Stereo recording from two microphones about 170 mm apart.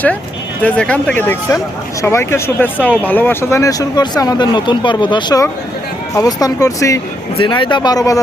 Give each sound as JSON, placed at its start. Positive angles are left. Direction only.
{"t": 0.6, "sound": "speech", "side_deg": 5}
{"t": 7.3, "sound": "speech", "side_deg": 30}